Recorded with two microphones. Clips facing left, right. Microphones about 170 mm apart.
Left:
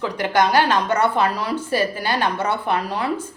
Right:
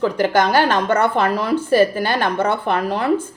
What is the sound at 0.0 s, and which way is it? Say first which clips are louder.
Speech: right 3 dB; 45° right (ahead or behind).